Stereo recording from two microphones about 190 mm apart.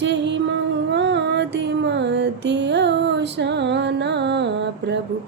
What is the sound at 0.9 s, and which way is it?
Female singing, 65° right (ahead or behind).